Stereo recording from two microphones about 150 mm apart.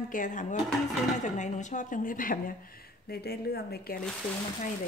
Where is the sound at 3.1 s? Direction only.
90° left.